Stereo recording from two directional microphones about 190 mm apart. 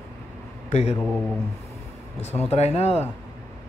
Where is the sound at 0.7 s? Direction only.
35° left (ahead or behind).